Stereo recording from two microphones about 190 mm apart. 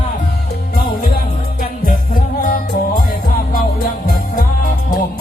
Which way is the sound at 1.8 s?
45° left (ahead or behind).